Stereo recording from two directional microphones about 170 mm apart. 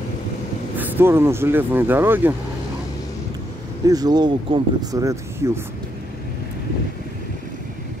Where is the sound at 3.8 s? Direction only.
20° right (ahead or behind).